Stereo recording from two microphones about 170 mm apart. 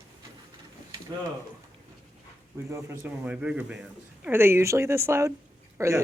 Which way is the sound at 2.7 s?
10° right (ahead or behind).